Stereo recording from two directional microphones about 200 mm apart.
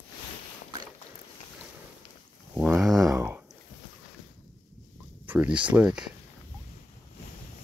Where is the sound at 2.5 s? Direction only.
Centre (ahead or behind).